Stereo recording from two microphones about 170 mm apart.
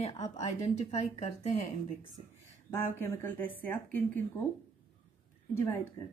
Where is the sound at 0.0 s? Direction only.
40° left (ahead or behind).